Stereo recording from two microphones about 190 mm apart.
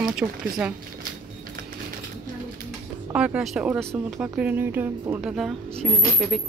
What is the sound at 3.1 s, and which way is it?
Speech, 5° right (ahead or behind).